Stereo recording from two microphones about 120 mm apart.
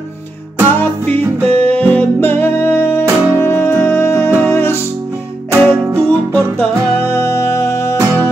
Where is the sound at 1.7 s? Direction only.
15° left (ahead or behind).